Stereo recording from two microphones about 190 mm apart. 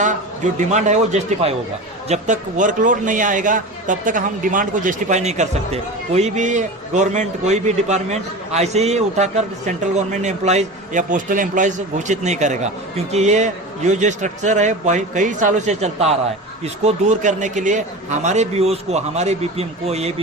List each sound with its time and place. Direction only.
0.0 s a man's voice: 40° right (ahead or behind)